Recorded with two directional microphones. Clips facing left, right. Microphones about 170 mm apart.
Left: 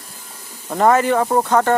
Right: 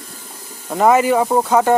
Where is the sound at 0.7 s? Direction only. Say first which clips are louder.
Right 1 dB; 5° right (ahead or behind).